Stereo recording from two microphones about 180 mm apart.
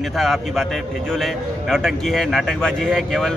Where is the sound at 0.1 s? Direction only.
Centre (ahead or behind).